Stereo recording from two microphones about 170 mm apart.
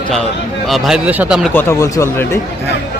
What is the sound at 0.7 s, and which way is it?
Speech, 5° right (ahead or behind).